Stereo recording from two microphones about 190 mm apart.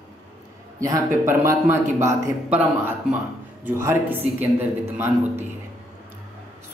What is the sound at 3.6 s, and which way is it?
A man's voice, 10° right (ahead or behind).